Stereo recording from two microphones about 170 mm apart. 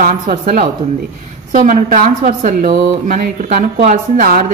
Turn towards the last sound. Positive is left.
turn(degrees=-55)  # may be behind; listen again after turning